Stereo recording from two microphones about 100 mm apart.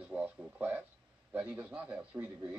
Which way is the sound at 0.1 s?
15° right (ahead or behind).